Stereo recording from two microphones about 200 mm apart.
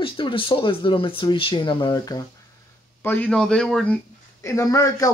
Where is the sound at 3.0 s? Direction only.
10° left (ahead or behind).